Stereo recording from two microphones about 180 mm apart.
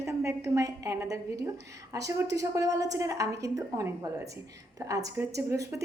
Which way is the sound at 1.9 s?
20° right (ahead or behind).